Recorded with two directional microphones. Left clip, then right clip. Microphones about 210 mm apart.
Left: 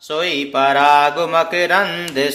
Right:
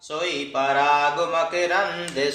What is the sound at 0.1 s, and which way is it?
Speech, 50° left (ahead or behind).